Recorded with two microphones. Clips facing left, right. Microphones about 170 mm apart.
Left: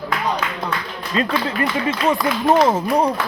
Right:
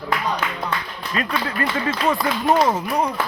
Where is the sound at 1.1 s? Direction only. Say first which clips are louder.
Left 4 dB; 25° left (ahead or behind).